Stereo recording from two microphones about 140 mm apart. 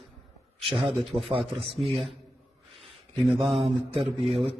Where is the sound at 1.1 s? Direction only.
40° right (ahead or behind).